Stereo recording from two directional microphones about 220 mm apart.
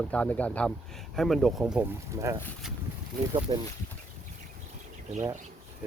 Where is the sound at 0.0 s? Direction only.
5° left (ahead or behind).